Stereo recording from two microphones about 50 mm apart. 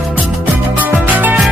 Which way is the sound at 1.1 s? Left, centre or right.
Right.